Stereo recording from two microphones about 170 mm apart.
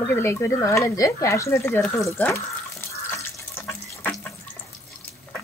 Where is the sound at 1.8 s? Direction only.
Centre (ahead or behind).